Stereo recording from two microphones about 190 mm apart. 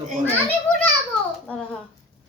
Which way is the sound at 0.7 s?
5° left (ahead or behind).